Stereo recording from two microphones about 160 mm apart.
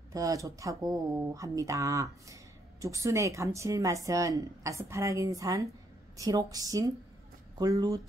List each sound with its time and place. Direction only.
0.1 s speech: 20° right (ahead or behind)